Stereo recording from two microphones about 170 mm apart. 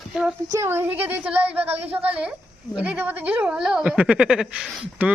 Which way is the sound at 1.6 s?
35° right (ahead or behind).